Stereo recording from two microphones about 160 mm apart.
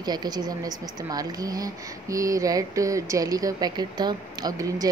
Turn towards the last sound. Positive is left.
turn(degrees=-20)  # may be behind; listen again after turning